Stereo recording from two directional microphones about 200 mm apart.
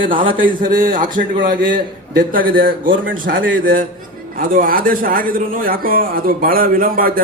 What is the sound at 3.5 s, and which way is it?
Speech, 80° right.